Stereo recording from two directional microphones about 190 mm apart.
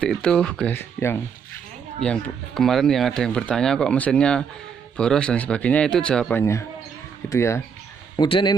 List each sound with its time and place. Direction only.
0.0 s a man's voice: 5° left (ahead or behind); by 8.5 s 25° left (ahead or behind)